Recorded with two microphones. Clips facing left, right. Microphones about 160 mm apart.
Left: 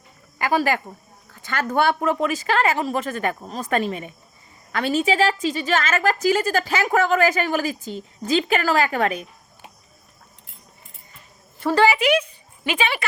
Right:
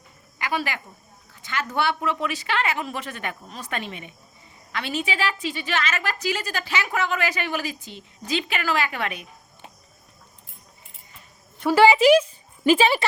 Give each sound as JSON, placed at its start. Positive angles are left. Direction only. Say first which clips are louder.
{"t": 0.3, "sound": "a sound", "louder": "left 7 dB", "side_deg": 45}
{"t": 1.3, "sound": "a woman's voice", "louder": "left 5 dB", "side_deg": 50}
{"t": 11.6, "sound": "a woman's voice", "louder": "right 2 dB", "side_deg": -10}
{"t": 12.6, "sound": "speech", "louder": "right 6 dB", "side_deg": -35}